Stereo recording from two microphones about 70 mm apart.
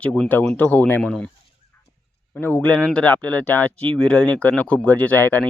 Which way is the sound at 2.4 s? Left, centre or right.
Left.